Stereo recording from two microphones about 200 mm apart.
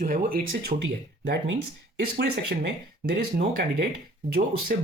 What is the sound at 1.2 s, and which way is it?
Speech, 55° right (ahead or behind).